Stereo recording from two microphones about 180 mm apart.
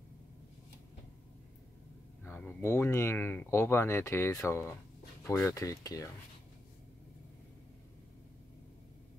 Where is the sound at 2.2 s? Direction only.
10° left (ahead or behind).